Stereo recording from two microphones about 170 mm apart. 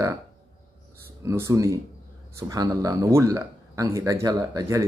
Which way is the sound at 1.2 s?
15° right (ahead or behind).